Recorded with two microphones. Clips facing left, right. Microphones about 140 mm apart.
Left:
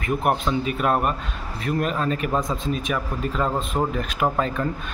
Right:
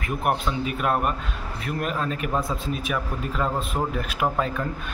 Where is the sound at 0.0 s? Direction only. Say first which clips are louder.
Left 3 dB; centre (ahead or behind).